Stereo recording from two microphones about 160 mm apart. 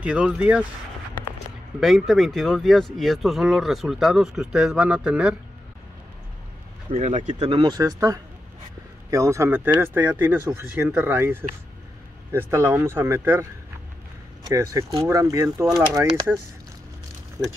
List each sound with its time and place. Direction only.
0.0 s speech: 5° right (ahead or behind)
1.8 s speech: centre (ahead or behind)
6.9 s speech: 45° right (ahead or behind)
7.3 s speech: 30° right (ahead or behind); by 13.5 s 15° right (ahead or behind)
14.5 s speech: 20° right (ahead or behind)